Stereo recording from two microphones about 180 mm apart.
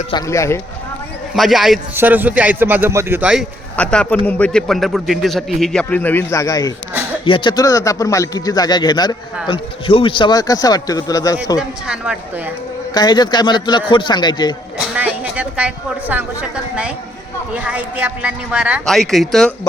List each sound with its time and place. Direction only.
0.1 s a man's voice: 20° left (ahead or behind)
1.4 s a man's voice: centre (ahead or behind)
3.8 s a man's voice: 5° left (ahead or behind)
6.9 s a sound: 10° right (ahead or behind)
7.3 s a man's voice: 25° left (ahead or behind)
11.9 s a man's voice: 5° right (ahead or behind)
12.9 s a man's voice: 25° left (ahead or behind)
14.8 s speech: 10° right (ahead or behind)